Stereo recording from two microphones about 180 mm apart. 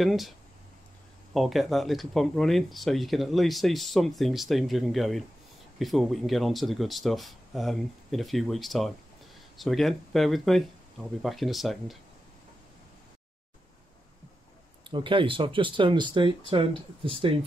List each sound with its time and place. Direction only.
0.0 s speech: centre (ahead or behind)
1.3 s speech: centre (ahead or behind)
14.9 s speech: 25° right (ahead or behind)